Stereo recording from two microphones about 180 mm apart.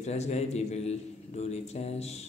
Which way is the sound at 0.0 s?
35° left (ahead or behind).